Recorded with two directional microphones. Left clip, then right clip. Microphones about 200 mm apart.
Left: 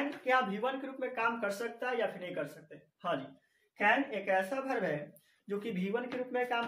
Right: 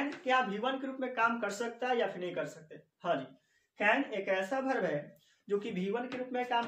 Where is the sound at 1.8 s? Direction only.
25° right (ahead or behind).